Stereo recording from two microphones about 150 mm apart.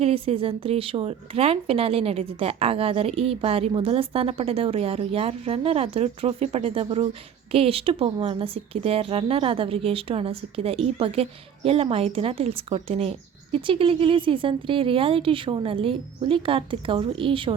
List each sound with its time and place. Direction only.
0.0 s speech: 40° right (ahead or behind)